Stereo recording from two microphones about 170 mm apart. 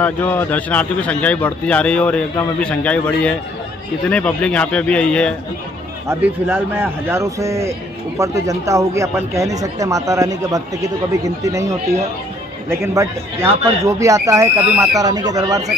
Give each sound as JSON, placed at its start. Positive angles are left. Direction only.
{"t": 0.0, "sound": "a man's voice", "side_deg": 10}
{"t": 6.0, "sound": "speech", "side_deg": -10}